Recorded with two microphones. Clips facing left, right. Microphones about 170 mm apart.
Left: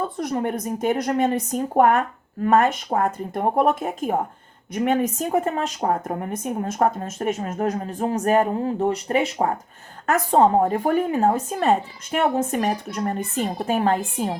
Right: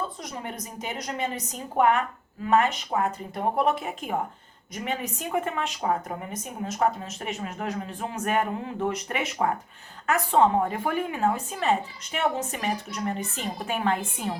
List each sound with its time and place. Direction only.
0.2 s speech: 55° left (ahead or behind)
4.7 s speech: 55° left (ahead or behind); by 14.3 s 40° left (ahead or behind)